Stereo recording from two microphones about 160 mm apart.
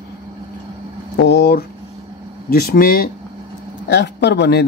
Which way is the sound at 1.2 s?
90° left.